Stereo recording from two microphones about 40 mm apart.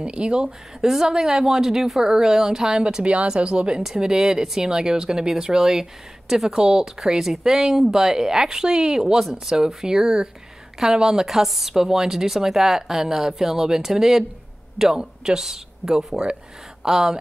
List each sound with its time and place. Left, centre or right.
0.0 s speech: right
3.1 s speech: right; by 17.2 s centre